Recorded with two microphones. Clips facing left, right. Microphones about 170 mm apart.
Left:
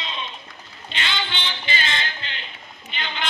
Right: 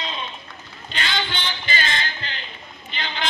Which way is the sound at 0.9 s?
40° right (ahead or behind).